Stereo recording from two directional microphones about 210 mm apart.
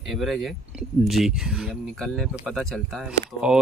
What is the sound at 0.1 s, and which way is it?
Speech, centre (ahead or behind).